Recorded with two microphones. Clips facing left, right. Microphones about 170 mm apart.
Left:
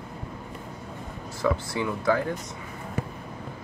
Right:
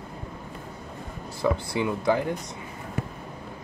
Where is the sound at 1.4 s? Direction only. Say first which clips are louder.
Right 1 dB; 25° right (ahead or behind).